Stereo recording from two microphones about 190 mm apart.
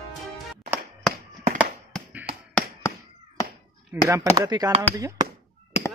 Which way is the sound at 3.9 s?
15° right (ahead or behind).